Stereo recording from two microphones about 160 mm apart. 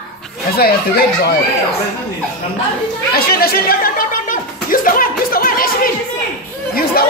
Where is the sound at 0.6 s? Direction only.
75° left (ahead or behind).